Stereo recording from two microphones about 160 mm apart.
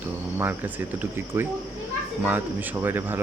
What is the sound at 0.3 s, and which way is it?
Speech, 10° right (ahead or behind).